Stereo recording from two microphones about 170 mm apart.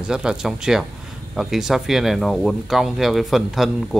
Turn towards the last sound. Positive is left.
turn(degrees=0)  # may be behind; listen again after turning